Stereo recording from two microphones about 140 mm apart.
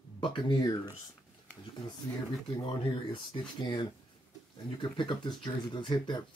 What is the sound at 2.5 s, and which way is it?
Speech, 35° left (ahead or behind).